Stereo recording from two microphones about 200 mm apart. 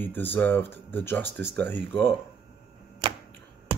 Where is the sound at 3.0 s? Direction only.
30° right (ahead or behind).